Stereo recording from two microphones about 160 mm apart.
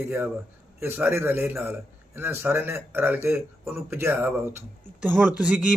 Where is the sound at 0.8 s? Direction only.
15° right (ahead or behind).